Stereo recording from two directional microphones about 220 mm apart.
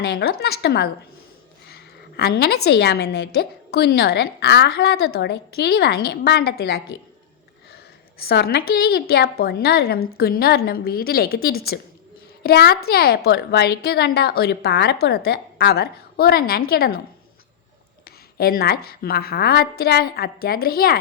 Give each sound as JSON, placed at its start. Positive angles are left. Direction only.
{"t": 0.0, "sound": "a woman's voice", "side_deg": 50}
{"t": 1.7, "sound": "a sound", "side_deg": 45}
{"t": 2.6, "sound": "a woman's voice", "side_deg": 50}
{"t": 8.2, "sound": "a woman's voice", "side_deg": 45}
{"t": 18.0, "sound": "a woman's voice", "side_deg": 45}